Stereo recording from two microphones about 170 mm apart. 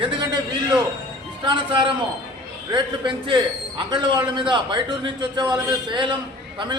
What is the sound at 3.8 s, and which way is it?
Speech, 25° right (ahead or behind).